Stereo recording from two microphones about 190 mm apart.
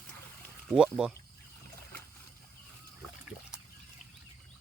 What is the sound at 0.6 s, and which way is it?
Speech, 5° right (ahead or behind).